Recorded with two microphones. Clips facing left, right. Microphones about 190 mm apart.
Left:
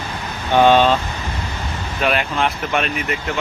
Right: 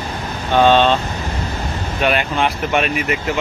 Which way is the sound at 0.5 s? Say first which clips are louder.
Even; 10° left (ahead or behind).